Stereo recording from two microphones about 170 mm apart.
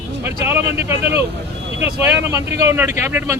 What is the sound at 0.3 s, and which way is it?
Speech, 15° right (ahead or behind).